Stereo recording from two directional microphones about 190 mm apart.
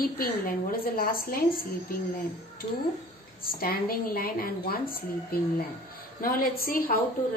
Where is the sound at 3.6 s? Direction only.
50° left (ahead or behind).